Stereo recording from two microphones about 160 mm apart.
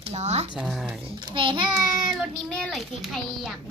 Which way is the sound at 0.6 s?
5° right (ahead or behind).